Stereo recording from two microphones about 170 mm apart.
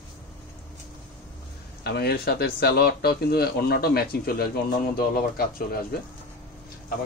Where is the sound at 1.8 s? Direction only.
70° left (ahead or behind).